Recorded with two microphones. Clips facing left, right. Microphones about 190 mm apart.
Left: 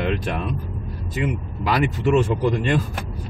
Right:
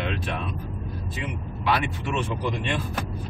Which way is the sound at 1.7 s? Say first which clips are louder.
Left 13 dB; 40° left (ahead or behind).